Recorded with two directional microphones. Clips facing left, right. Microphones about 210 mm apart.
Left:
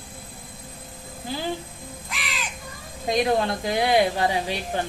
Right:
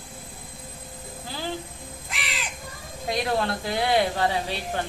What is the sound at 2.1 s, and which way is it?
Crow, 30° right (ahead or behind).